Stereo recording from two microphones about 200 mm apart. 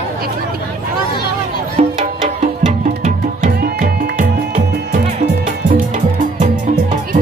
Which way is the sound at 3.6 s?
50° right (ahead or behind).